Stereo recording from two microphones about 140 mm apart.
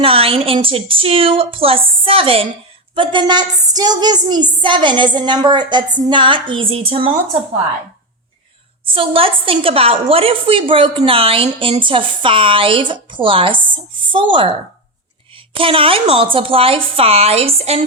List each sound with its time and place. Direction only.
0.0 s a woman's voice: 40° right (ahead or behind)
8.9 s a woman's voice: 40° right (ahead or behind)